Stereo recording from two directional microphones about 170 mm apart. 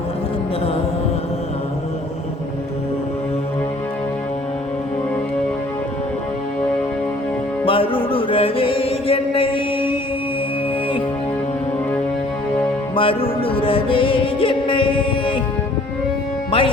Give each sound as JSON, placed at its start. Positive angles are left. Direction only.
{"t": 7.6, "sound": "music", "side_deg": 30}
{"t": 13.0, "sound": "music", "side_deg": 30}
{"t": 16.5, "sound": "music", "side_deg": 30}